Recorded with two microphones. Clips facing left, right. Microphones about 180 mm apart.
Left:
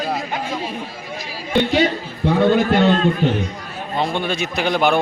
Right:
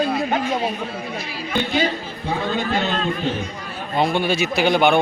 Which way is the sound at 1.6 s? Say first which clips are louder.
Left 5 dB; 70° left (ahead or behind).